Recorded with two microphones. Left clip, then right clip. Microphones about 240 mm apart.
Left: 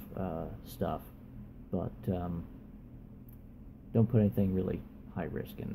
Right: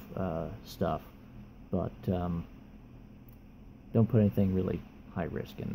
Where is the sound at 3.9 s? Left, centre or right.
Centre.